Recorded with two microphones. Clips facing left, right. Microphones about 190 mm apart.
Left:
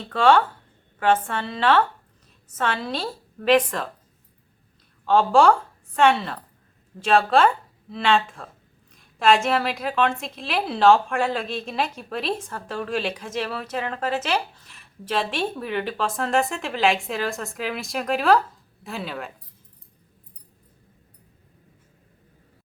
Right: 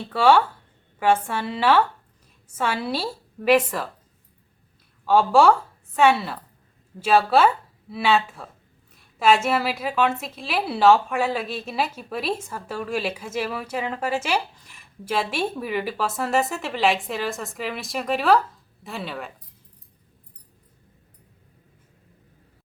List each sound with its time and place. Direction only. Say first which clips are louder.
0.1 s a woman's voice: even; 10° right (ahead or behind)
5.0 s a woman's voice: even; 5° right (ahead or behind)